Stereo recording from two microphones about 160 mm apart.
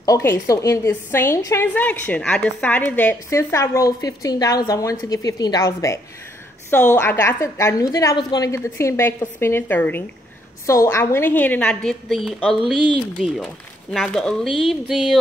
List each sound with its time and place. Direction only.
0.0 s a woman's voice: 20° left (ahead or behind); by 12.8 s 5° left (ahead or behind)
13.9 s speech: 5° left (ahead or behind)